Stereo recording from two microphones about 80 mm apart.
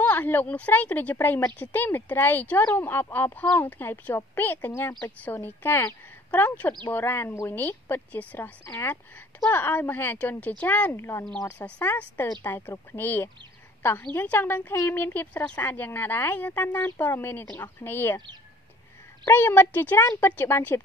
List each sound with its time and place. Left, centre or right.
0.0 s a woman's voice: left
9.5 s a woman's voice: left
11.0 s speech: left
11.4 s a woman's voice: centre
19.2 s a woman's voice: left